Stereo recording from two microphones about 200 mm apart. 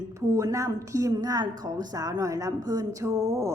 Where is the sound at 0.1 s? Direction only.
15° right (ahead or behind).